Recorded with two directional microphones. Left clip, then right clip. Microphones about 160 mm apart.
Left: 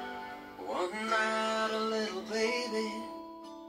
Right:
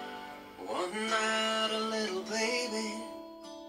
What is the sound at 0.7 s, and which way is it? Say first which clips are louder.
Music: even; 25° right (ahead or behind).